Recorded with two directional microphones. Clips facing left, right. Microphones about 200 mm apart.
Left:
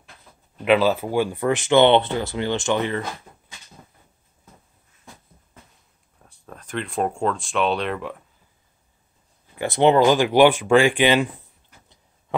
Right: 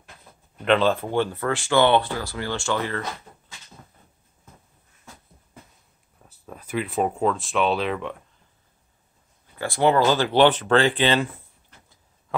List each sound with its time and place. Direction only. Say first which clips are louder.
0.7 s speech: left 2 dB; 5° left (ahead or behind)
6.2 s speech: right 1 dB; 5° right (ahead or behind)
9.6 s speech: left 3 dB; 20° left (ahead or behind)